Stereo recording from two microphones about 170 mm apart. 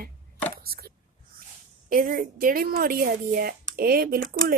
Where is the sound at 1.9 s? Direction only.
55° right (ahead or behind).